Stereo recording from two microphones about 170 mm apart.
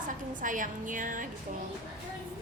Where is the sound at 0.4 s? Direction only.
50° right (ahead or behind).